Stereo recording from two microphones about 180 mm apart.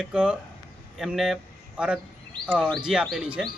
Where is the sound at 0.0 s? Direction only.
5° right (ahead or behind).